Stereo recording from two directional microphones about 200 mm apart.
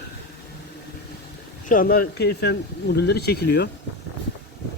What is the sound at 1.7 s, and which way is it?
Speech, 45° left (ahead or behind).